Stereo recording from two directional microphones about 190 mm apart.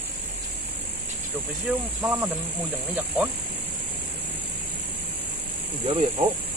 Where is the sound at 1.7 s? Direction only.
10° right (ahead or behind).